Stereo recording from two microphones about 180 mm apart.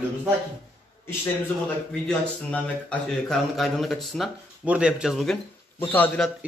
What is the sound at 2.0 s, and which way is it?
A man's voice, 5° left (ahead or behind).